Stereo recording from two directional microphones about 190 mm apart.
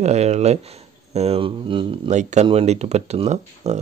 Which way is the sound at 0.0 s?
35° right (ahead or behind).